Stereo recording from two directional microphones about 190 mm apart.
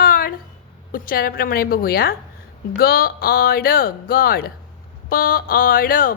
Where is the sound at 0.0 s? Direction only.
50° left (ahead or behind).